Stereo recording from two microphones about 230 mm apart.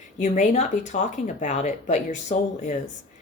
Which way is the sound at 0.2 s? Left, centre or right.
Left.